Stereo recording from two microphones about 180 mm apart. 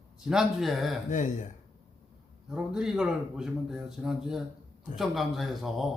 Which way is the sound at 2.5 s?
5° right (ahead or behind).